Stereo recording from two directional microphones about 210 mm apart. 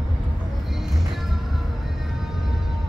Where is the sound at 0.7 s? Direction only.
Centre (ahead or behind).